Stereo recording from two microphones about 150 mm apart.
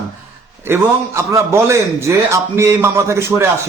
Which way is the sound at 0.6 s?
15° right (ahead or behind).